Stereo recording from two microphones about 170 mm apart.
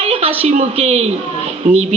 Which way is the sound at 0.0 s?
35° right (ahead or behind).